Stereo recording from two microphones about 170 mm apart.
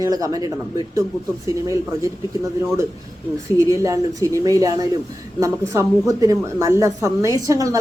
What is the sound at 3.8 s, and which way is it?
A woman's voice, 20° right (ahead or behind).